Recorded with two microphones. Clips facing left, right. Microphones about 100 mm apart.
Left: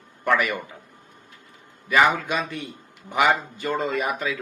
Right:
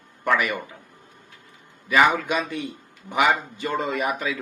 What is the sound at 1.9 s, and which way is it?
Speech, centre (ahead or behind).